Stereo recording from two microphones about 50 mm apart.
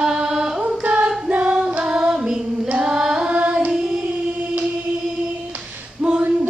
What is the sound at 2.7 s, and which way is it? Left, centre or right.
Singing, centre.